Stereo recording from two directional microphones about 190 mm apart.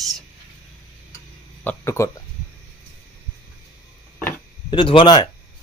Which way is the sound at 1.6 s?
15° left (ahead or behind).